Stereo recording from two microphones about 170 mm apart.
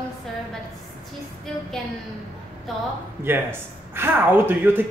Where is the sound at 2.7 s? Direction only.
Centre (ahead or behind).